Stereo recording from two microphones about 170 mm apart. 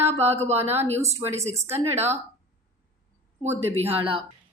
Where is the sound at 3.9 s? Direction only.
30° right (ahead or behind).